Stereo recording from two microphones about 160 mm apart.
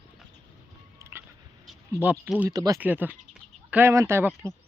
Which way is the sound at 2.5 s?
20° right (ahead or behind).